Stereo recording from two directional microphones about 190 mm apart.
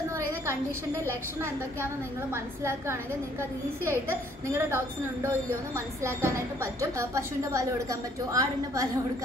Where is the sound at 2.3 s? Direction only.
15° right (ahead or behind).